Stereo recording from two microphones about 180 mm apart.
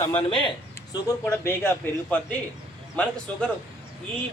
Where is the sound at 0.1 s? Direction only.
30° left (ahead or behind).